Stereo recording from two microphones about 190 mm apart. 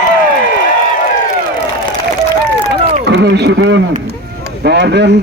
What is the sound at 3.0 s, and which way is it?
A man's voice, 65° right (ahead or behind).